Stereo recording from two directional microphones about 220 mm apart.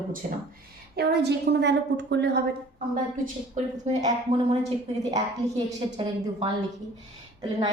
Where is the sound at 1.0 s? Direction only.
50° right (ahead or behind).